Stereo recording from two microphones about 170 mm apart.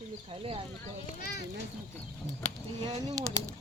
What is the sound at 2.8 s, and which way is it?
Speech, 20° right (ahead or behind).